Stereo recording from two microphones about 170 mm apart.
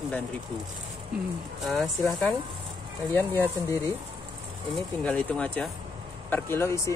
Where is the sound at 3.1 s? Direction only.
10° left (ahead or behind).